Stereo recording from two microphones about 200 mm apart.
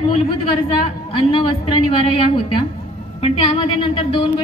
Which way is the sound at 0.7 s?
25° left (ahead or behind).